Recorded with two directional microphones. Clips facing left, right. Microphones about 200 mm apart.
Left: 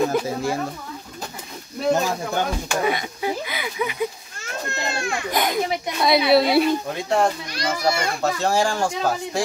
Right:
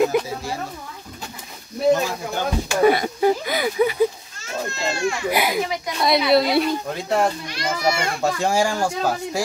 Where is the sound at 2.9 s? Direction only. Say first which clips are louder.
Right 7 dB; 40° right (ahead or behind).